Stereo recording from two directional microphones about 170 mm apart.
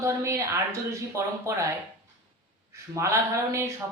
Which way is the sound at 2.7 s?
15° right (ahead or behind).